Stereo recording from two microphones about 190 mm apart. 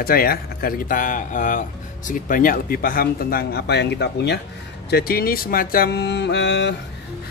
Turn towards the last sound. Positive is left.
turn(degrees=65)  # may be behind; listen again after turning